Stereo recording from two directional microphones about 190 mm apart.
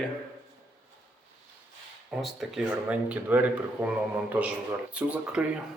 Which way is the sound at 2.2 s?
Centre (ahead or behind).